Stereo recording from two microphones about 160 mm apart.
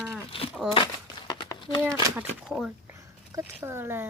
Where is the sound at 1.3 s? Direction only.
25° left (ahead or behind).